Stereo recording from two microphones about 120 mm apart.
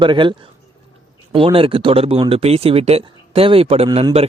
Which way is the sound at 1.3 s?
50° right (ahead or behind).